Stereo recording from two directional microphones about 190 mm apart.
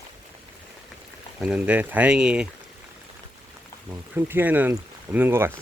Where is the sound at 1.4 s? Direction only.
5° right (ahead or behind).